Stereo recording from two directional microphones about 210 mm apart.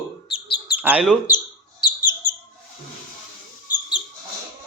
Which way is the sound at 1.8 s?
20° left (ahead or behind).